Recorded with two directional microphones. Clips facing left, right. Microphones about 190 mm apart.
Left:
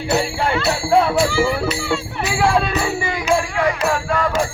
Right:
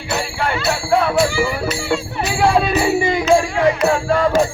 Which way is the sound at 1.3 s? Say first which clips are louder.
Left 1 dB; 15° right (ahead or behind).